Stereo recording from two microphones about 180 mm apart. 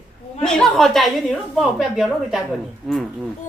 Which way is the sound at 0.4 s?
Centre (ahead or behind).